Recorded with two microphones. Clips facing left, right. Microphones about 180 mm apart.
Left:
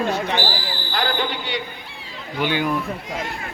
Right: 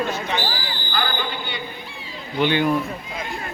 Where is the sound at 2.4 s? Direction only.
10° left (ahead or behind).